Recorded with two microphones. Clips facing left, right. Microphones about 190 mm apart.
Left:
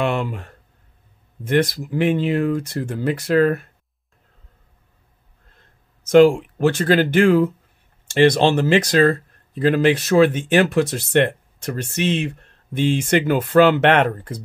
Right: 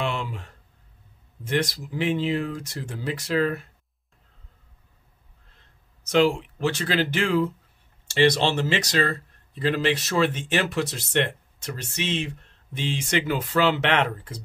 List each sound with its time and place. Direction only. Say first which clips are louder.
0.0 s speech: left 7 dB; 60° left (ahead or behind)
6.0 s speech: left 9 dB; 50° left (ahead or behind)